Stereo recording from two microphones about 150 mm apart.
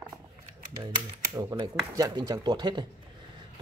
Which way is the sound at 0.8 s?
30° right (ahead or behind).